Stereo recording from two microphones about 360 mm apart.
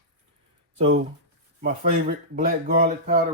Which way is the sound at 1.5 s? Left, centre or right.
Right.